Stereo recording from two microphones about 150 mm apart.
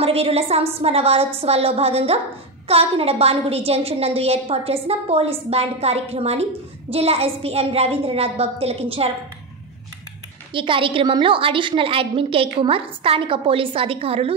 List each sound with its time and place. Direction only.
0.0 s a woman's voice: 40° right (ahead or behind)
10.5 s a woman's voice: 35° right (ahead or behind)